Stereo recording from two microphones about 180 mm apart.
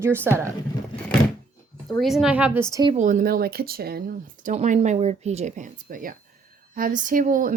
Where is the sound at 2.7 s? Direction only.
25° right (ahead or behind).